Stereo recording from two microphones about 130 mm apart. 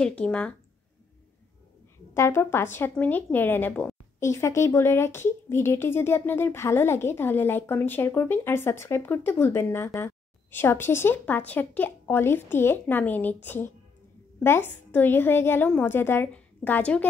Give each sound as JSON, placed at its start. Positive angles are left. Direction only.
{"t": 0.0, "sound": "speech", "side_deg": 10}
{"t": 2.1, "sound": "speech", "side_deg": 20}